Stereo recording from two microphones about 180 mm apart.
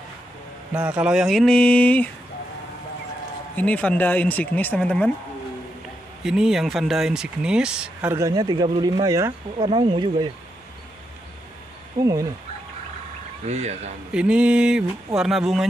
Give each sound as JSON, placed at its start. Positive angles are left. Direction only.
{"t": 0.7, "sound": "speech", "side_deg": -10}
{"t": 3.5, "sound": "speech", "side_deg": 10}
{"t": 6.2, "sound": "speech", "side_deg": -5}
{"t": 12.0, "sound": "speech", "side_deg": -20}
{"t": 13.5, "sound": "speech", "side_deg": -40}
{"t": 14.1, "sound": "speech", "side_deg": -5}